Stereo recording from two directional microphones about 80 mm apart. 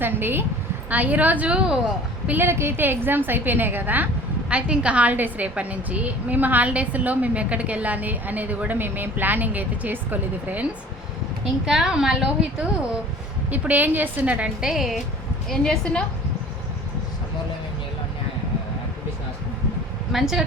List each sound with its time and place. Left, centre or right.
0.0 s a woman's voice: right; by 2.3 s centre
2.3 s a woman's voice: right
11.6 s a woman's voice: centre
13.5 s a woman's voice: right
14.6 s a woman's voice: centre
20.1 s a woman's voice: centre